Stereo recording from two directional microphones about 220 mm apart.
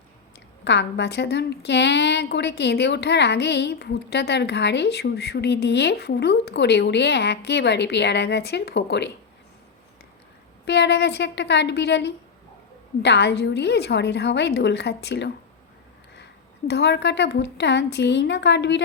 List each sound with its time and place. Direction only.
0.6 s a woman's voice: 50° left (ahead or behind)
10.7 s a woman's voice: 50° left (ahead or behind)
16.6 s a woman's voice: 50° left (ahead or behind)